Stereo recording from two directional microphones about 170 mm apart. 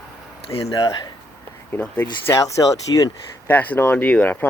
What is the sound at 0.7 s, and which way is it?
Speech, 20° left (ahead or behind).